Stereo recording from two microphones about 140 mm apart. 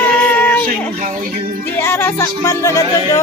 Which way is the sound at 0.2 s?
15° left (ahead or behind).